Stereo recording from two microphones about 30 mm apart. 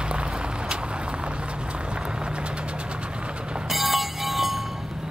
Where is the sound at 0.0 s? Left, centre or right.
Right.